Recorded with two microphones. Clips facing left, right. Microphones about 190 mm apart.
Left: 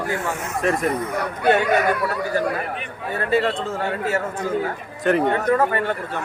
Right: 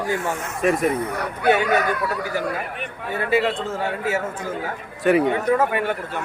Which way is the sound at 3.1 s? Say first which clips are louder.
Even; 5° right (ahead or behind).